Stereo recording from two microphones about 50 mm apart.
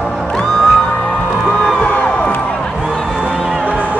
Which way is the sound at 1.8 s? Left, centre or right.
Left.